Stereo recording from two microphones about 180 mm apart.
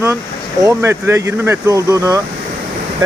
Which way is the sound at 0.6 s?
15° right (ahead or behind).